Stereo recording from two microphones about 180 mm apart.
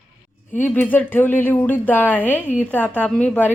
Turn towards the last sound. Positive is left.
turn(degrees=10)  # may be behind; listen again after turning